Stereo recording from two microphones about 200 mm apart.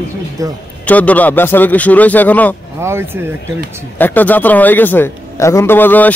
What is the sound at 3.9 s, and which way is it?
A man's voice, 10° left (ahead or behind).